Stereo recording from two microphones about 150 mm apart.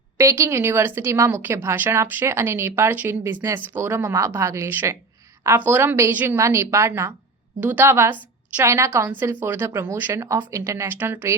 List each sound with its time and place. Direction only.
0.2 s a woman's voice: 20° right (ahead or behind)